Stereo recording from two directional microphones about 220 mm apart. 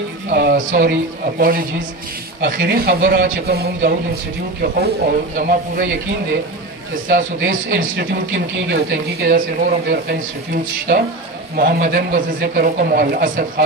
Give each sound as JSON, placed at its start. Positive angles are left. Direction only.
{"t": 0.3, "sound": "speech", "side_deg": -45}
{"t": 2.4, "sound": "speech", "side_deg": -45}
{"t": 7.1, "sound": "a man's voice", "side_deg": -40}
{"t": 7.9, "sound": "a man's voice", "side_deg": -55}